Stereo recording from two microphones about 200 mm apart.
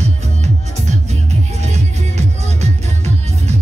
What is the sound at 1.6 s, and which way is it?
Music, 35° right (ahead or behind).